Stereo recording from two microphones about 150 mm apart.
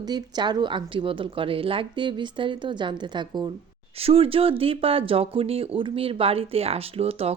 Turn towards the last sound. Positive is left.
turn(degrees=-40)  # may be behind; listen again after turning